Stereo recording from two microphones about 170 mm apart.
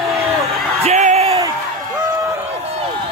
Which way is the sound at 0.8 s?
40° right (ahead or behind).